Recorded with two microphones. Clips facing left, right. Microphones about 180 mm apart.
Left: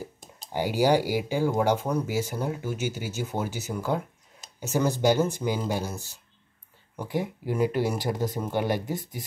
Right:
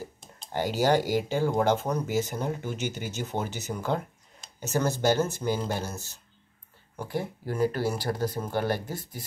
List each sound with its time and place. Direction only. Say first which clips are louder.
0.0 s speech: left 1 dB; 10° left (ahead or behind)